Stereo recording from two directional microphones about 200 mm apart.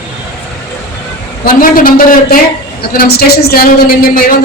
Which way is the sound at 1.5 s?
45° left (ahead or behind).